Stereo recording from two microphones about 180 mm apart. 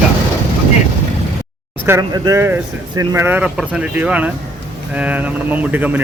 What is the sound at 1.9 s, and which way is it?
Speech, 20° right (ahead or behind).